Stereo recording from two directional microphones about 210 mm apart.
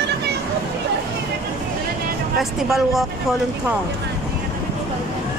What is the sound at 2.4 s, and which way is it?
Speech, centre (ahead or behind).